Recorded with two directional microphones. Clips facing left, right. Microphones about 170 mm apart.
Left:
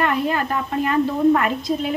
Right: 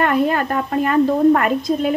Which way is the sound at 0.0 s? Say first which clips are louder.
Right 4 dB; 50° right (ahead or behind).